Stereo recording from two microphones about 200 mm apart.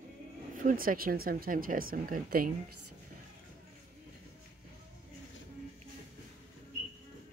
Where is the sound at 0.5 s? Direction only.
45° right (ahead or behind).